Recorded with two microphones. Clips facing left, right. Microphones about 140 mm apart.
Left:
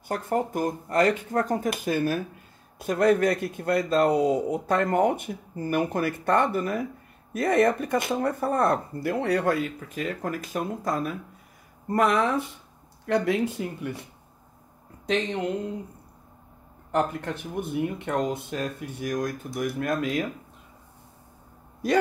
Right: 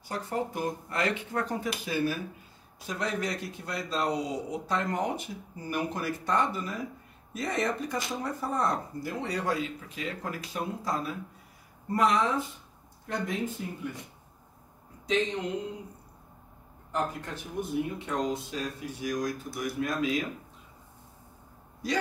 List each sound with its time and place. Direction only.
0.1 s a man's voice: 50° left (ahead or behind)
13.0 s speech: 75° left (ahead or behind)
16.9 s a man's voice: 60° left (ahead or behind)
21.8 s a man's voice: 55° left (ahead or behind)